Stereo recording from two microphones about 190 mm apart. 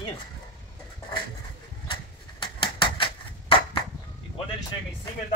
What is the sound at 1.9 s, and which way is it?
Typewriter, 25° left (ahead or behind).